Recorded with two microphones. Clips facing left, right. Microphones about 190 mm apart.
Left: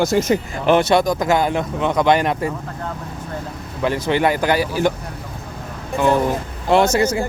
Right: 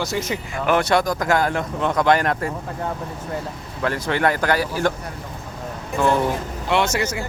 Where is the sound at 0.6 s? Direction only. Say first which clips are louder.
Left 3 dB; 25° left (ahead or behind).